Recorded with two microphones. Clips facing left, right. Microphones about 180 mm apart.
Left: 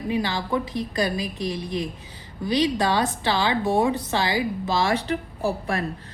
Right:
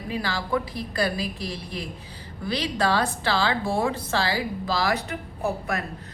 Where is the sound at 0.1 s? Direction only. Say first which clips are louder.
Left 2 dB; 20° left (ahead or behind).